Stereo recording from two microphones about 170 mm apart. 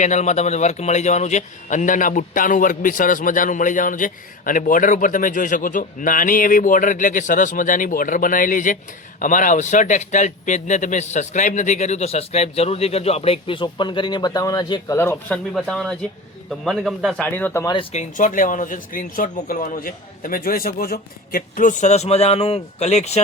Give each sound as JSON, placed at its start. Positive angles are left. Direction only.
{"t": 0.0, "sound": "a man's voice", "side_deg": 45}
{"t": 15.5, "sound": "speech", "side_deg": 5}
{"t": 17.7, "sound": "a man's voice", "side_deg": 40}